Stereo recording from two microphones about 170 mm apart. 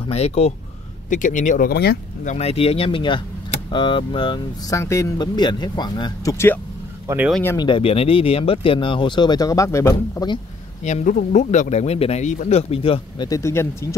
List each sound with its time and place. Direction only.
0.0 s speech: 35° left (ahead or behind)
1.1 s speech: 50° left (ahead or behind)
1.7 s speech: 70° left (ahead or behind)
2.2 s speech: 40° left (ahead or behind)
4.7 s speech: 15° left (ahead or behind)
6.3 s speech: 15° left (ahead or behind)
7.1 s speech: 15° right (ahead or behind)
7.5 s speech: 30° left (ahead or behind)
10.8 s speech: 50° left (ahead or behind); by 13.3 s 35° left (ahead or behind)
13.3 s speech: 15° left (ahead or behind)